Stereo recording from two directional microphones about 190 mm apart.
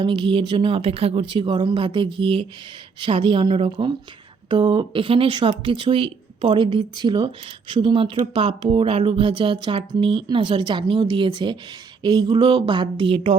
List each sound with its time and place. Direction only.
0.0 s speech: 25° right (ahead or behind)